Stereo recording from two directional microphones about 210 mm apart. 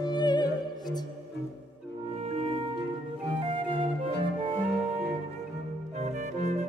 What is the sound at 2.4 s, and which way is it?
Music, 25° right (ahead or behind).